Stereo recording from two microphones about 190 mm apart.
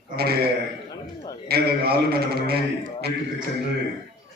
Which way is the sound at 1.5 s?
55° right (ahead or behind).